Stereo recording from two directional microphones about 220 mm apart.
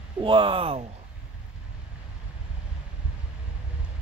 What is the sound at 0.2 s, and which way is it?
Speech, 25° right (ahead or behind).